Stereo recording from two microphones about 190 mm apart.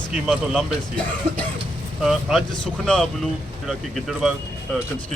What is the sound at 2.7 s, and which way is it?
Speech, 5° left (ahead or behind).